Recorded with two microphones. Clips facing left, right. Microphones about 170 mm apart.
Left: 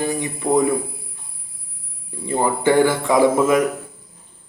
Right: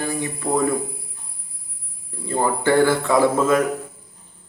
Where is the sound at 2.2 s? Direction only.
15° left (ahead or behind).